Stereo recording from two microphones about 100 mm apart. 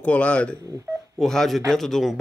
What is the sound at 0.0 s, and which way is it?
Speech, 15° left (ahead or behind).